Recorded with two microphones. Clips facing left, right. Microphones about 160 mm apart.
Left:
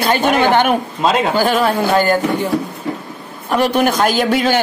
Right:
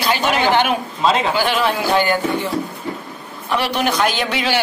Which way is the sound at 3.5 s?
50° left (ahead or behind).